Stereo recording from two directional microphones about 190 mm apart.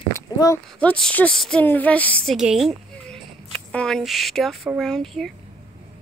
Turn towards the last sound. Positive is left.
turn(degrees=0)  # may be behind; listen again after turning